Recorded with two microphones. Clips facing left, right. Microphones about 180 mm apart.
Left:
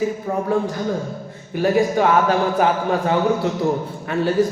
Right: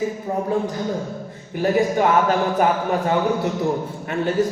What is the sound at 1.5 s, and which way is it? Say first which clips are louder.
Speech: left 1 dB; 20° right (ahead or behind).